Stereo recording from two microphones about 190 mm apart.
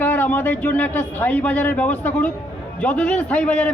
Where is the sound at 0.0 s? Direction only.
10° left (ahead or behind).